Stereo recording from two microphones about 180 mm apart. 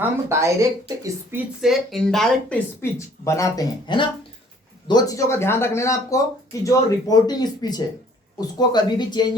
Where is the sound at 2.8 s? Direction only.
15° left (ahead or behind).